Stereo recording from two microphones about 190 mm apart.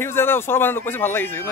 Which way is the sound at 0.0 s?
10° left (ahead or behind).